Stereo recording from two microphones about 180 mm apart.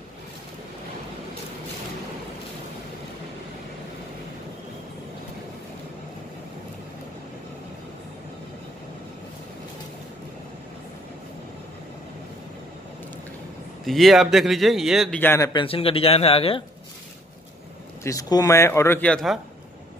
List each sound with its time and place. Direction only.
13.8 s speech: centre (ahead or behind)
15.1 s a man's voice: 15° left (ahead or behind)
15.5 s speech: 30° left (ahead or behind)
18.0 s a man's voice: 20° left (ahead or behind); by 19.4 s centre (ahead or behind)